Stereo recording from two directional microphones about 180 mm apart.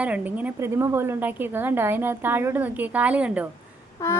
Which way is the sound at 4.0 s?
15° left (ahead or behind).